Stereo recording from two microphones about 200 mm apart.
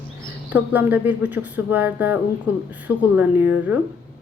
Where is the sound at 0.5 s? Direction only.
10° right (ahead or behind).